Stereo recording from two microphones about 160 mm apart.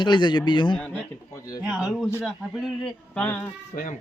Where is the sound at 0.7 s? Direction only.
5° left (ahead or behind).